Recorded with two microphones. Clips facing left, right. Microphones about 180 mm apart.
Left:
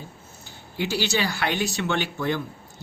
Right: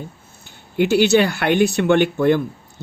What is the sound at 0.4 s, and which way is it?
Speech, 60° right (ahead or behind).